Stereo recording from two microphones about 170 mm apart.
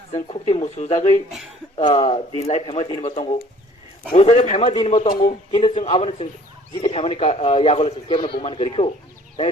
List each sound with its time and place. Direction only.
0.1 s a man's voice: 35° left (ahead or behind)
4.1 s a man's voice: 40° left (ahead or behind)